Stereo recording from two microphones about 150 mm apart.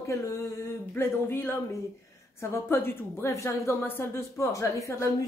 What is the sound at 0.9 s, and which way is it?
A woman's voice, 15° left (ahead or behind).